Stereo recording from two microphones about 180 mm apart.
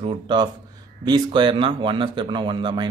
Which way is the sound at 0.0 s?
25° right (ahead or behind).